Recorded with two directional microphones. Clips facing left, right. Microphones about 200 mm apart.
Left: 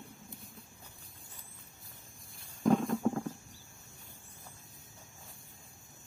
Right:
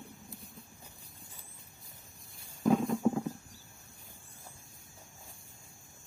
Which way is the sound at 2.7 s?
Centre (ahead or behind).